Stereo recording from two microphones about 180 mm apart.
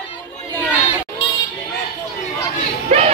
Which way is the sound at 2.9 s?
35° right (ahead or behind).